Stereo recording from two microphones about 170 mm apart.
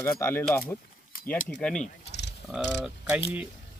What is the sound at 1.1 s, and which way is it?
Keys jangling, 60° left (ahead or behind).